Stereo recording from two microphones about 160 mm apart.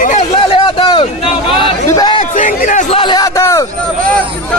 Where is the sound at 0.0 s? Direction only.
50° left (ahead or behind).